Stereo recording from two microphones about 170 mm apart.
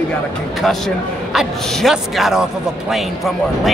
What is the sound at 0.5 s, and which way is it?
A man's voice, centre (ahead or behind).